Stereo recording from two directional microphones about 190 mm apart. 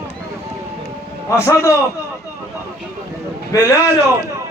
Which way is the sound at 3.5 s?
20° left (ahead or behind).